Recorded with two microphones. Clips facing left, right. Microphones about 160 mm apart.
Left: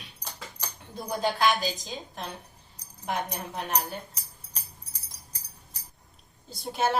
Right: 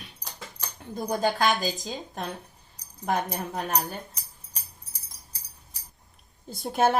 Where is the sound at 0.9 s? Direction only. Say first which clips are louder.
Right 3 dB; 45° right (ahead or behind).